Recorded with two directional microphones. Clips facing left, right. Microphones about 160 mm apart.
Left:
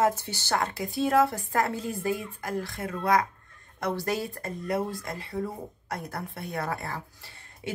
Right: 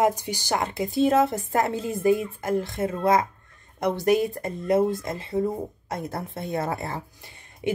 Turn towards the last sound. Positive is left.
turn(degrees=-20)  # may be behind; listen again after turning